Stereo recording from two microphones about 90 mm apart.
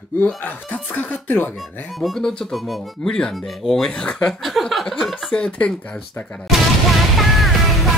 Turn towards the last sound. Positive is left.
turn(degrees=0)  # may be behind; listen again after turning